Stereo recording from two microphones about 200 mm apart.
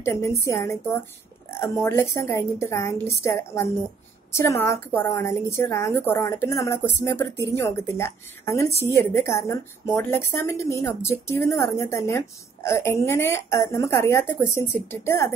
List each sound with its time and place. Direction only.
0.0 s a woman's voice: 15° left (ahead or behind)